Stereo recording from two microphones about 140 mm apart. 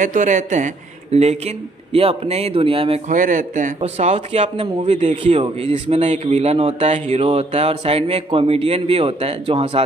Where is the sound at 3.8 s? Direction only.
50° right (ahead or behind).